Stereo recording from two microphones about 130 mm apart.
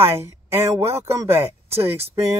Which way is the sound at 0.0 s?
20° right (ahead or behind).